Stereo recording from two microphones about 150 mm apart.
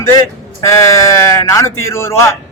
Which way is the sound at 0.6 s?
20° left (ahead or behind).